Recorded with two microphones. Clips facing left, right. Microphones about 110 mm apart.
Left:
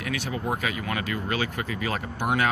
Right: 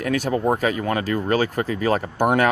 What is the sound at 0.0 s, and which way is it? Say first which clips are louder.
Speech: right 9 dB; 45° right (ahead or behind).